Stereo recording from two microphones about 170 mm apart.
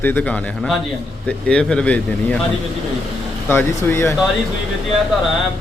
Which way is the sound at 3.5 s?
15° left (ahead or behind).